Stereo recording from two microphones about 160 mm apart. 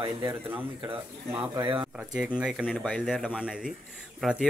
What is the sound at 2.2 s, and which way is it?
Speech, 5° right (ahead or behind).